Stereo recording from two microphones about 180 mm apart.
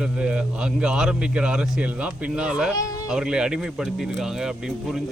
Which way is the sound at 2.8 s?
20° left (ahead or behind).